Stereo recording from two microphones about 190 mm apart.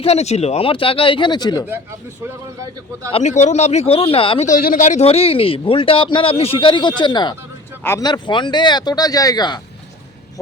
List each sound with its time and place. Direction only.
0.0 s a man's voice: 35° left (ahead or behind)
3.1 s speech: 35° left (ahead or behind)
4.4 s a man's voice: 45° left (ahead or behind); by 9.6 s 20° left (ahead or behind)